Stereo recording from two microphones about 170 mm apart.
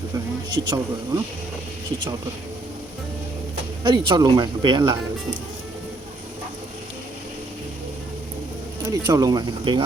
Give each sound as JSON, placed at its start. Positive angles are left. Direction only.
{"t": 0.5, "sound": "speech", "side_deg": -20}
{"t": 3.8, "sound": "speech", "side_deg": -25}
{"t": 8.8, "sound": "speech", "side_deg": -20}